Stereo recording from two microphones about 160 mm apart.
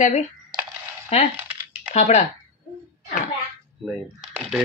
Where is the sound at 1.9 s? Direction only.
45° left (ahead or behind).